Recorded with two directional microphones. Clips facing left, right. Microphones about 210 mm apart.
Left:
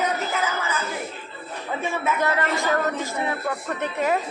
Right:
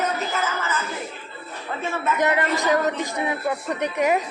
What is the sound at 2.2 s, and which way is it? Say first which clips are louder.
Speech: right 2 dB; 20° right (ahead or behind).